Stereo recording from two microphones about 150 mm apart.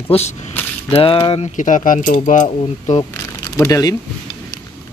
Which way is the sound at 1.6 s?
60° left (ahead or behind).